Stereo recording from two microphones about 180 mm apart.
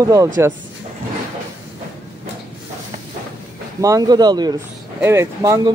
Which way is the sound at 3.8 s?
20° right (ahead or behind).